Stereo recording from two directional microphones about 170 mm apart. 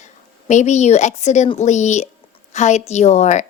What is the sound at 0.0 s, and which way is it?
Speech, 45° left (ahead or behind).